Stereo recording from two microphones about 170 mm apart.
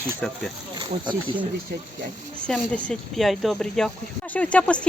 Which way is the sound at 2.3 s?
5° left (ahead or behind).